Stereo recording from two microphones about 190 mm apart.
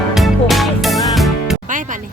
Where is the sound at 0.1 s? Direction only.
Centre (ahead or behind).